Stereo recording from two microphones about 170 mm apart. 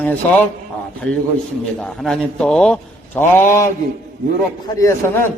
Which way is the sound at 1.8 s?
5° left (ahead or behind).